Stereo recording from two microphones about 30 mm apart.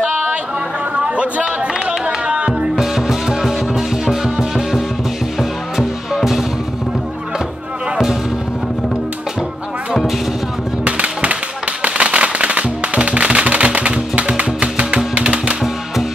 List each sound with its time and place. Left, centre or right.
0.9 s music: right
2.8 s music: centre
10.9 s music: right